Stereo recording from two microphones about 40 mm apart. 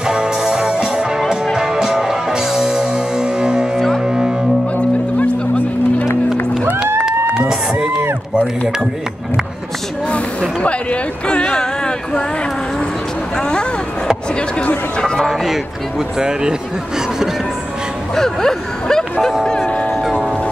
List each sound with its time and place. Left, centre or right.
0.0 s music: centre
3.7 s music: centre
4.0 s music: centre
7.1 s a sound: centre
10.6 s speech: left
13.4 s vehicle: left
15.0 s speech: centre
15.2 s speech: centre
16.2 s speech: centre
18.1 s speech: centre
20.0 s music: centre